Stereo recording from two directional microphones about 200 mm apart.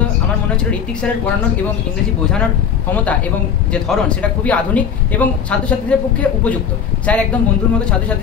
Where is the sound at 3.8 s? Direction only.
5° left (ahead or behind).